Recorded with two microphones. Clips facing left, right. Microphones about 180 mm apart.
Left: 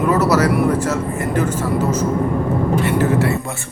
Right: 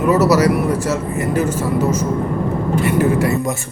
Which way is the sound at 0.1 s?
10° right (ahead or behind).